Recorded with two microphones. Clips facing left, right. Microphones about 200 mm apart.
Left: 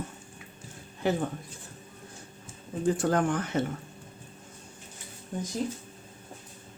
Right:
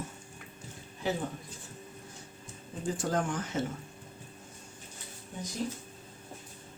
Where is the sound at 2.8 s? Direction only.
60° left (ahead or behind).